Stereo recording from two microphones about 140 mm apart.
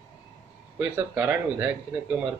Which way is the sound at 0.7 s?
10° right (ahead or behind).